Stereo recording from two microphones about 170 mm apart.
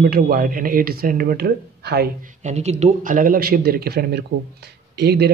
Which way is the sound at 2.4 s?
40° right (ahead or behind).